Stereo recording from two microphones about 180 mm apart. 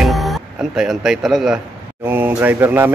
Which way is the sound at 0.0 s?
Centre (ahead or behind).